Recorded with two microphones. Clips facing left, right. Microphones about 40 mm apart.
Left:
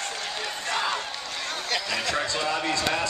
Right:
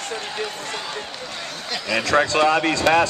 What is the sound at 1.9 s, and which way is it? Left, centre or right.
Speech, right.